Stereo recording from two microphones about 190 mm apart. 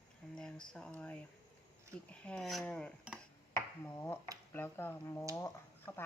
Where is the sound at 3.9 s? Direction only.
15° left (ahead or behind).